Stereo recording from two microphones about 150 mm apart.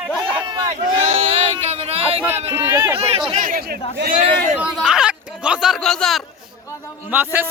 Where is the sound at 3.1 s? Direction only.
40° right (ahead or behind).